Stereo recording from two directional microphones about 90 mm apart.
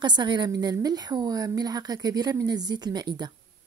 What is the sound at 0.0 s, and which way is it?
A woman's voice, 55° right (ahead or behind).